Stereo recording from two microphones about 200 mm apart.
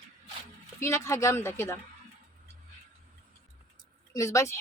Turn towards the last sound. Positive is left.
turn(degrees=15)  # may be behind; listen again after turning